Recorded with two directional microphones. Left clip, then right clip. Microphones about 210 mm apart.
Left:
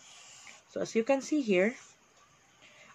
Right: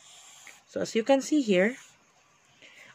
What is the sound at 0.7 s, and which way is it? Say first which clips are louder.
Speech: right 4 dB; 55° right (ahead or behind).